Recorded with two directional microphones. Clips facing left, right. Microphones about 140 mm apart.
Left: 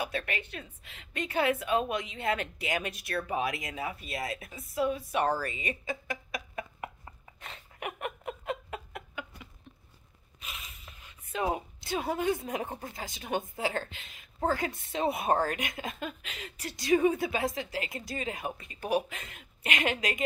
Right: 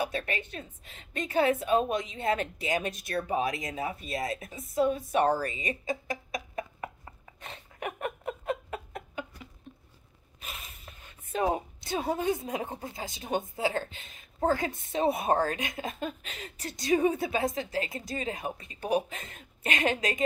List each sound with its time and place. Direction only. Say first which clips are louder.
0.1 s speech: right 1 dB; 35° right (ahead or behind)
3.1 s a woman's voice: right 2 dB; 20° right (ahead or behind)
3.6 s speech: right 3 dB; 30° right (ahead or behind)
4.7 s speech: right 3 dB; 45° right (ahead or behind)
5.2 s speech: right 3 dB; 25° right (ahead or behind)
7.4 s a sound: right 2 dB; 35° right (ahead or behind)
10.4 s a sound: right 2 dB; 50° right (ahead or behind)
10.9 s writing: right 4 dB; 30° right (ahead or behind)
11.9 s a woman's voice: right 1 dB; 25° right (ahead or behind)
13.9 s a woman's voice: right 2 dB; 35° right (ahead or behind)
15.9 s a woman's voice: right 3 dB; 35° right (ahead or behind)